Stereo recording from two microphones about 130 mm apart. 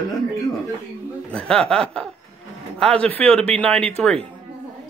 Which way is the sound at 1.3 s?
5° left (ahead or behind).